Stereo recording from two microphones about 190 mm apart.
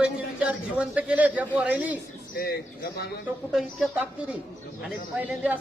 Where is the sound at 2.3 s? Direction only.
55° left (ahead or behind).